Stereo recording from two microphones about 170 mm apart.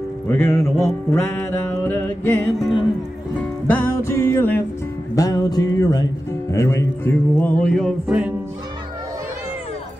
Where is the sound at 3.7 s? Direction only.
15° left (ahead or behind).